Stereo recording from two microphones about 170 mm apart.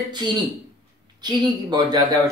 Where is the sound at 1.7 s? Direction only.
25° right (ahead or behind).